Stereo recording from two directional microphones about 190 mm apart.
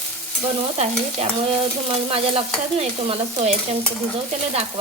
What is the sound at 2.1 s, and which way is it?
Stir, 30° right (ahead or behind).